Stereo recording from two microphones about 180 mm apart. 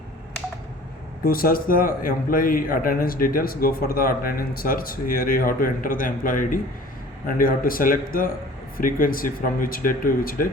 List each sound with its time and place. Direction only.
1.2 s a man's voice: 55° left (ahead or behind)